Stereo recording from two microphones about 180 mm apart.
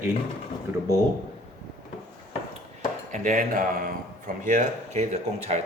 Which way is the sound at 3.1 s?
45° right (ahead or behind).